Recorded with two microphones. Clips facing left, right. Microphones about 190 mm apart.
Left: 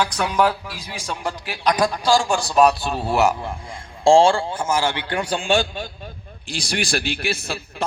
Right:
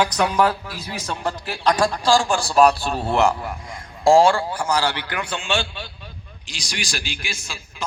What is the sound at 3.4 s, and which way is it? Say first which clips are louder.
A man's voice: even; 30° left (ahead or behind).